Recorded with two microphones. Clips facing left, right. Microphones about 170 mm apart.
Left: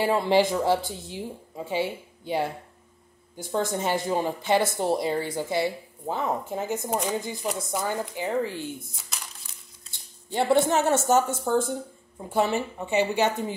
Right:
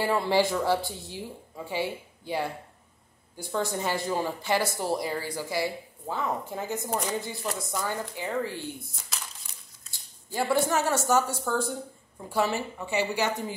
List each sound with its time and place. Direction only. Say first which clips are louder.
0.0 s a woman's voice: left 3 dB; 20° left (ahead or behind)
9.8 s a sound: left 4 dB; 25° left (ahead or behind)
10.9 s a woman's voice: left 3 dB; 25° left (ahead or behind)